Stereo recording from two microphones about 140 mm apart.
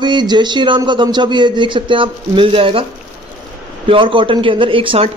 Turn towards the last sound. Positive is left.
turn(degrees=-40)  # may be behind; listen again after turning